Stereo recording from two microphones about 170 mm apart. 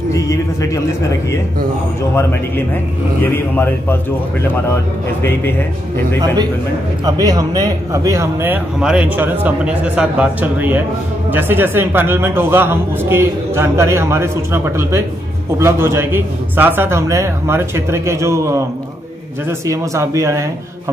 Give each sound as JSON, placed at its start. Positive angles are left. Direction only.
{"t": 0.1, "sound": "music", "side_deg": 20}
{"t": 3.5, "sound": "a man's voice", "side_deg": 10}
{"t": 7.1, "sound": "a man's voice", "side_deg": -25}
{"t": 19.6, "sound": "a man's voice", "side_deg": -15}